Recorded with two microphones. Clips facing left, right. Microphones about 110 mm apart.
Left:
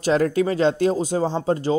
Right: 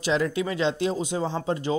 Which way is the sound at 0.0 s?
45° left (ahead or behind).